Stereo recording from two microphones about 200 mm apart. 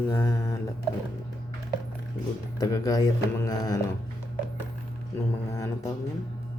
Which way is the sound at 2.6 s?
20° left (ahead or behind).